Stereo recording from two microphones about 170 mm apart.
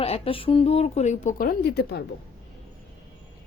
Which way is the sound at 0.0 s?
35° left (ahead or behind).